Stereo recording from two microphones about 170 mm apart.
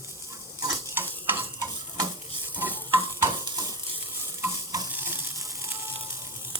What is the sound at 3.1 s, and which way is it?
Stir, 20° right (ahead or behind).